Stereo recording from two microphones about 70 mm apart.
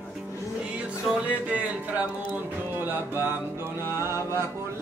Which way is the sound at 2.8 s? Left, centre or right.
Right.